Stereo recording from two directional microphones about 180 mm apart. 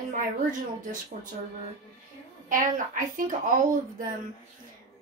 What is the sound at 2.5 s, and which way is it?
Speech, 50° right (ahead or behind).